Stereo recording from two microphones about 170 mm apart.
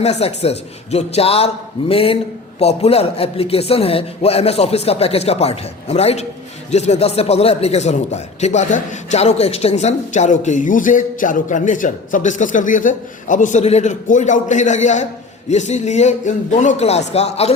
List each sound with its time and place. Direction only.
0.0 s a man's voice: 40° left (ahead or behind)